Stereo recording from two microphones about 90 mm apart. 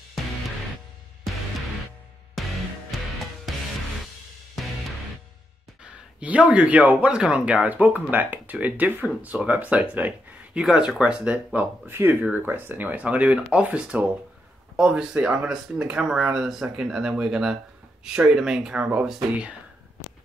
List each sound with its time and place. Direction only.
2.9 s music: centre (ahead or behind)
6.1 s speech: 15° right (ahead or behind)